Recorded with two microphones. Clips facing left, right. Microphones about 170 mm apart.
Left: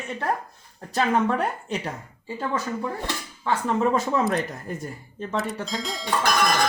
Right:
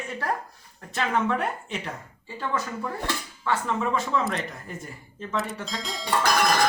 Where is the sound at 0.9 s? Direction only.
35° left (ahead or behind).